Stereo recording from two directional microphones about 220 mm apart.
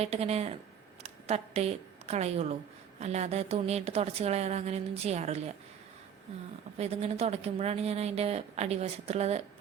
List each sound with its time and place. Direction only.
0.0 s a woman's voice: 30° right (ahead or behind)
6.7 s a woman's voice: 30° right (ahead or behind)